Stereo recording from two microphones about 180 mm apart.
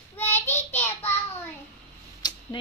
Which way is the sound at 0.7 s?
10° left (ahead or behind).